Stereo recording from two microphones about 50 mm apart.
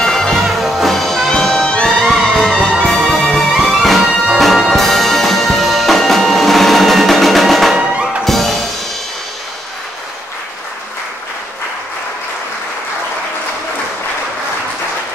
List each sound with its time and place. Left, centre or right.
0.0 s music: centre
0.3 s music: centre
3.8 s music: centre